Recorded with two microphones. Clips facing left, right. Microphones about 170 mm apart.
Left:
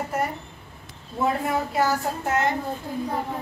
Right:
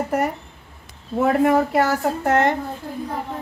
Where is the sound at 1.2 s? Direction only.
70° right (ahead or behind).